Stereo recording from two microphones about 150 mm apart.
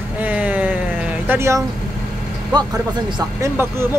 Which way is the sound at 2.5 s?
30° right (ahead or behind).